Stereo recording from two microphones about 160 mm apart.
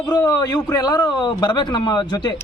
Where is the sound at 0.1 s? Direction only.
20° left (ahead or behind).